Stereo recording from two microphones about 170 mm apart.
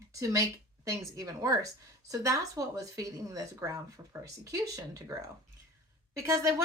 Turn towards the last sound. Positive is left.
turn(degrees=-20)  # may be behind; listen again after turning